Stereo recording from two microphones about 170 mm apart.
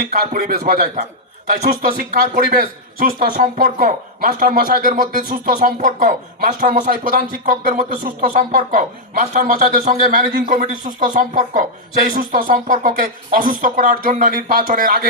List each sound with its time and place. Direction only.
0.1 s speech: 55° right (ahead or behind)